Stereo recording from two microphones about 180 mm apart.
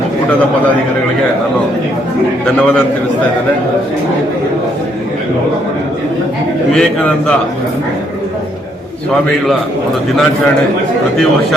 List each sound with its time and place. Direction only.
6.7 s a man's voice: 5° left (ahead or behind)